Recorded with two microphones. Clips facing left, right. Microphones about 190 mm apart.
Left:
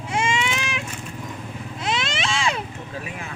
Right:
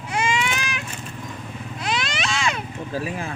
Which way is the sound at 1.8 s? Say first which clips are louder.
Left 1 dB; 25° left (ahead or behind).